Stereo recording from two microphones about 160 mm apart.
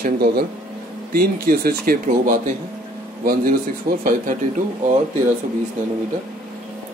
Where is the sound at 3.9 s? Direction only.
65° right (ahead or behind).